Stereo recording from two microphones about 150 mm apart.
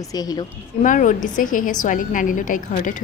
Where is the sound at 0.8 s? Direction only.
60° left (ahead or behind).